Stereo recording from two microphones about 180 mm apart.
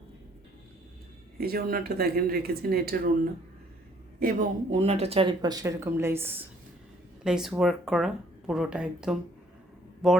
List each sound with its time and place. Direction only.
1.4 s speech: 55° right (ahead or behind)
4.2 s speech: 50° right (ahead or behind)
4.7 s speech: 35° right (ahead or behind); by 10.2 s centre (ahead or behind)